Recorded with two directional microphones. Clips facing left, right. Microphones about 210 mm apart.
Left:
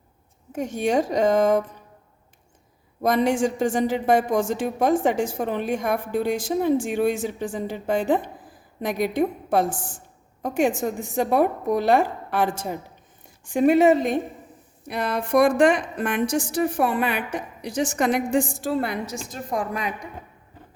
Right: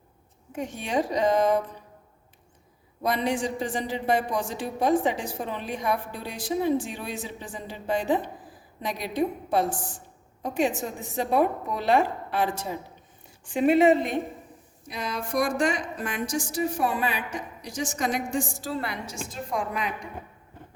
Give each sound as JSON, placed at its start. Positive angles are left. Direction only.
{"t": 0.5, "sound": "speech", "side_deg": 45}
{"t": 3.0, "sound": "speech", "side_deg": 45}
{"t": 14.8, "sound": "a woman's voice", "side_deg": 60}